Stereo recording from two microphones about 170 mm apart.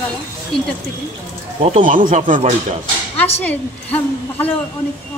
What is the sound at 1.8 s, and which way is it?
Speech, 50° right (ahead or behind).